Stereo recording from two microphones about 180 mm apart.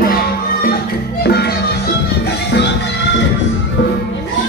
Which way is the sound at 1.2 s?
65° left (ahead or behind).